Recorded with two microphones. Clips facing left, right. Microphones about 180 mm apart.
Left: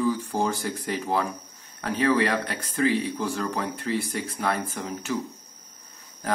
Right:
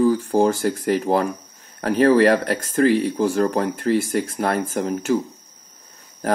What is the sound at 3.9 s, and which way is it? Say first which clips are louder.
Speech: right 8 dB; 90° right.